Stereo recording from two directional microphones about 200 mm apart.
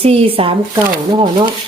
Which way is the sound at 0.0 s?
30° right (ahead or behind).